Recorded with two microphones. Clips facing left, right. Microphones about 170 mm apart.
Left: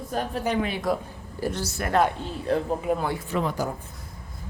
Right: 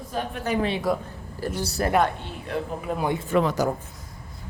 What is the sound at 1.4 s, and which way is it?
Speech, 15° left (ahead or behind).